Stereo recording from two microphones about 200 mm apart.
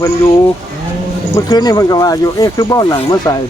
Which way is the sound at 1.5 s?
20° left (ahead or behind).